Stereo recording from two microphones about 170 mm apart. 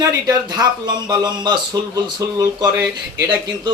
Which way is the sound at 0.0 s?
20° right (ahead or behind).